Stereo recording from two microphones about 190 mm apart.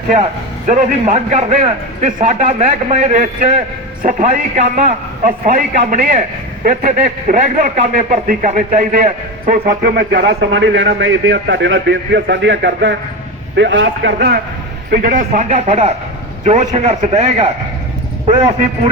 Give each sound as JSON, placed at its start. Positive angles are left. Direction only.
{"t": 0.7, "sound": "a man's voice", "side_deg": -35}
{"t": 14.9, "sound": "a man's voice", "side_deg": -45}